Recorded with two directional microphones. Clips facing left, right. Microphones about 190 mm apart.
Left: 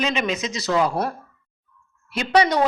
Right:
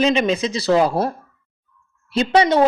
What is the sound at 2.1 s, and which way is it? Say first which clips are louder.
Speech: right 3 dB; 25° right (ahead or behind).